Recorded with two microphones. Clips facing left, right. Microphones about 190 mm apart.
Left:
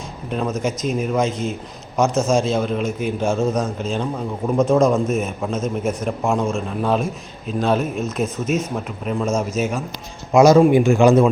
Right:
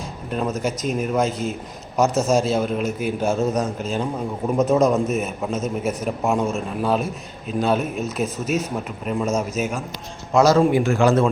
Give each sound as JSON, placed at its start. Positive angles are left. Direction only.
{"t": 0.3, "sound": "a man's voice", "side_deg": 0}
{"t": 10.3, "sound": "a man's voice", "side_deg": 15}